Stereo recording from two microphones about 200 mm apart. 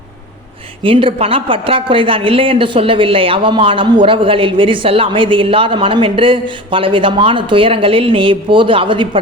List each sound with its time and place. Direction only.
0.8 s a woman's voice: 25° right (ahead or behind)